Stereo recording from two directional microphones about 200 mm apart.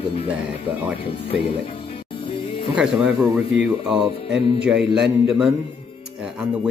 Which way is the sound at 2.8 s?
Centre (ahead or behind).